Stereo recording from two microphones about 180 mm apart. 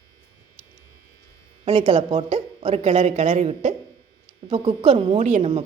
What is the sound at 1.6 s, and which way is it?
A woman's voice, 25° right (ahead or behind).